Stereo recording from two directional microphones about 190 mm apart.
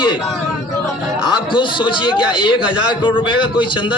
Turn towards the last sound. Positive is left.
turn(degrees=25)  # may be behind; listen again after turning